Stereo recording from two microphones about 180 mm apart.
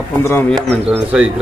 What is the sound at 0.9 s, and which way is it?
Speech, 5° right (ahead or behind).